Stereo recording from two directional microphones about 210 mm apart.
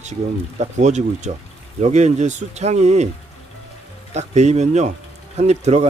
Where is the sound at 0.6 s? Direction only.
35° right (ahead or behind).